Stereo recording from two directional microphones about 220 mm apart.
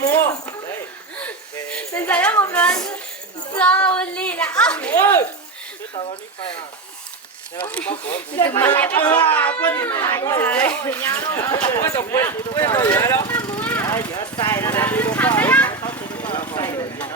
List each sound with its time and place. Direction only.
0.0 s a sound: 15° left (ahead or behind)
3.5 s a woman's voice: 5° left (ahead or behind)
7.7 s speech: 5° left (ahead or behind)
16.5 s vehicle: 15° left (ahead or behind)